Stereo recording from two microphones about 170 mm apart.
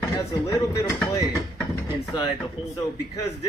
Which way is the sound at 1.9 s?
25° left (ahead or behind).